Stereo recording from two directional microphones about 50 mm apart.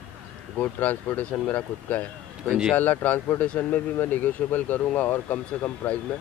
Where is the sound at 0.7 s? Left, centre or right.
Left.